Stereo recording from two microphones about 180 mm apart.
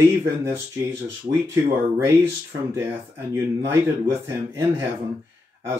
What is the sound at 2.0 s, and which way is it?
Speech, 15° right (ahead or behind).